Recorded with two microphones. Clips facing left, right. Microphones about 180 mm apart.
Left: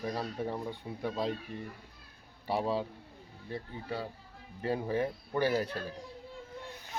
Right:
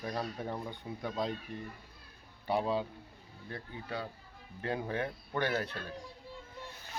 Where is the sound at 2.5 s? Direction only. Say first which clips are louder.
Even; centre (ahead or behind).